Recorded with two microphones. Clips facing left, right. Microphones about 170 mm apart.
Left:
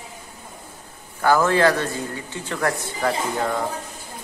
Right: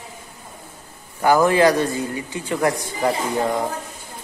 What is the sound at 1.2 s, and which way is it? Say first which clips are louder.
A man's voice: right 2 dB; 15° right (ahead or behind).